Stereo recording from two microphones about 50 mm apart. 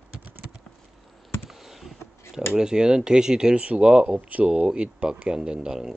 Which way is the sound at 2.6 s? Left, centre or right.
Centre.